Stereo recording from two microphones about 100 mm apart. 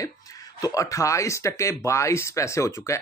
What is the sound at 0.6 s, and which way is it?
Speech, 35° left (ahead or behind).